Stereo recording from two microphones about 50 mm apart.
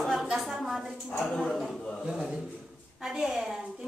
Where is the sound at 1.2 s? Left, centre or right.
Centre.